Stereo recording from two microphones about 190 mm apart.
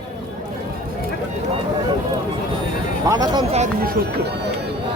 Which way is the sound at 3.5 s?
40° right (ahead or behind).